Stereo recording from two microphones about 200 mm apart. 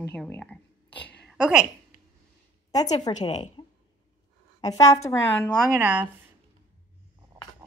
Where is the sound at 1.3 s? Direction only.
5° right (ahead or behind).